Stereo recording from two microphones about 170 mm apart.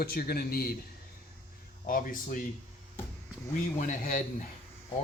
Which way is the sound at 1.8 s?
55° left (ahead or behind).